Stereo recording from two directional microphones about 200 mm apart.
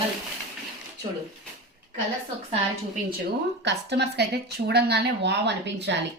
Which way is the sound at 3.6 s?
60° right (ahead or behind).